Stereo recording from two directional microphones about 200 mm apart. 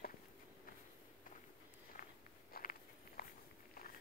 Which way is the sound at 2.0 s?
45° left (ahead or behind).